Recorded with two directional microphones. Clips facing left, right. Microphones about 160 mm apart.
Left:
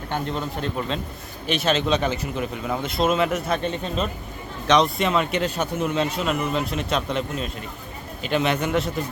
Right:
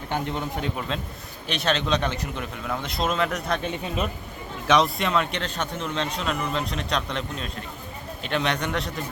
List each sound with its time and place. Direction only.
0.1 s speech: 15° right (ahead or behind)
1.5 s a man's voice: centre (ahead or behind)
3.7 s a man's voice: 10° right (ahead or behind)